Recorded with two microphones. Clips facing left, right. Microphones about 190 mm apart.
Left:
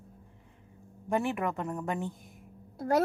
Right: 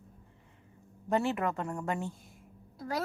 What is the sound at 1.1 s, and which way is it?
Speech, 15° left (ahead or behind).